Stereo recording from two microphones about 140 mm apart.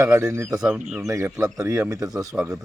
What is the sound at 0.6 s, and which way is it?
Speech, 5° right (ahead or behind).